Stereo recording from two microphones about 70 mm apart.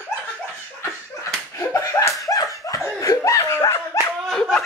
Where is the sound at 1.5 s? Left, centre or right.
Left.